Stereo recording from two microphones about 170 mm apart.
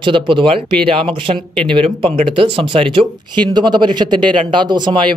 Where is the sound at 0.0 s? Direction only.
30° right (ahead or behind).